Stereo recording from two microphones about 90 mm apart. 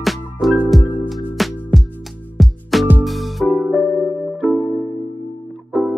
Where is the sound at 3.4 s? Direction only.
20° left (ahead or behind).